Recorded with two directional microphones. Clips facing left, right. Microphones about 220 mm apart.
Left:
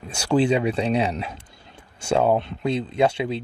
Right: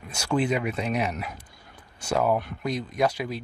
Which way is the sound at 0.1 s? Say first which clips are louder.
Left 5 dB; 30° left (ahead or behind).